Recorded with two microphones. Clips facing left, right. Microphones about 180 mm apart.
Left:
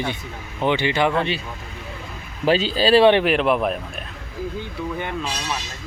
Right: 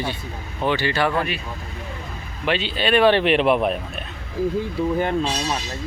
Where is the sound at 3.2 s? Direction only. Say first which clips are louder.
Right 1 dB; centre (ahead or behind).